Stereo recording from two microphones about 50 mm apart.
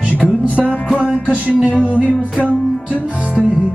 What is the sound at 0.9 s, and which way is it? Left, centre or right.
Music, right.